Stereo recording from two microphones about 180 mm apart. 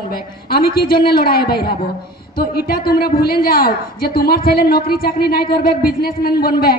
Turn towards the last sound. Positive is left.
turn(degrees=55)  # may be behind; listen again after turning